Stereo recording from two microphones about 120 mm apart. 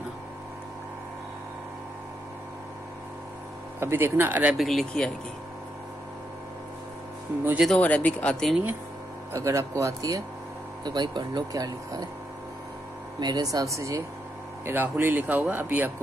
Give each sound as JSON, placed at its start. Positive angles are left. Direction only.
{"t": 3.8, "sound": "speech", "side_deg": -20}
{"t": 4.6, "sound": "speech", "side_deg": 0}
{"t": 7.6, "sound": "speech", "side_deg": 10}
{"t": 9.3, "sound": "speech", "side_deg": -25}
{"t": 13.2, "sound": "speech", "side_deg": -35}